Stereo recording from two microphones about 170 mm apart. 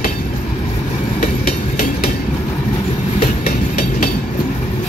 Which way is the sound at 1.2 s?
55° left (ahead or behind).